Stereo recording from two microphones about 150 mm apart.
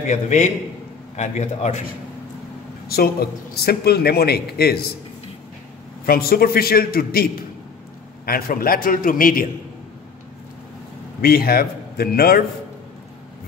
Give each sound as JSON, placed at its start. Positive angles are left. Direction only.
{"t": 0.1, "sound": "a man's voice", "side_deg": 50}
{"t": 2.9, "sound": "a man's voice", "side_deg": 90}
{"t": 6.0, "sound": "a man's voice", "side_deg": 85}
{"t": 8.3, "sound": "a man's voice", "side_deg": 80}
{"t": 11.1, "sound": "a man's voice", "side_deg": 80}